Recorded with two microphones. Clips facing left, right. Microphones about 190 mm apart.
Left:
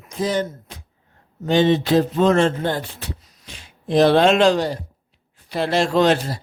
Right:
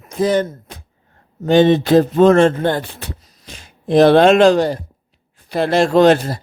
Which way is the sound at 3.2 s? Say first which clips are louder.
Right 3 dB; 40° right (ahead or behind).